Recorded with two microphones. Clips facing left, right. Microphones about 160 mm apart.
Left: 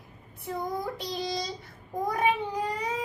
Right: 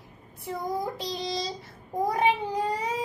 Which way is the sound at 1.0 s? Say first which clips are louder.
Right 1 dB; 25° right (ahead or behind).